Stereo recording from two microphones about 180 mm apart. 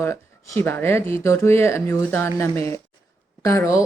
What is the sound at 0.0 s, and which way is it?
Speech, 15° left (ahead or behind).